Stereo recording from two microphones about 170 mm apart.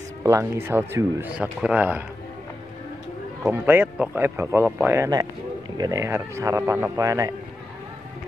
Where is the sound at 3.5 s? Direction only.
10° right (ahead or behind).